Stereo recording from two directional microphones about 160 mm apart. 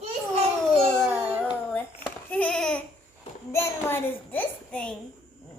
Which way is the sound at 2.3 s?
5° left (ahead or behind).